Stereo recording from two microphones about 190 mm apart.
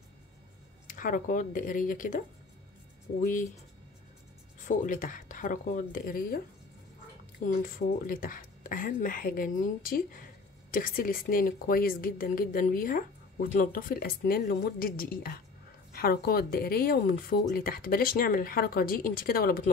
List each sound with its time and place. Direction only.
0.8 s speech: 45° left (ahead or behind)
4.6 s speech: 45° left (ahead or behind)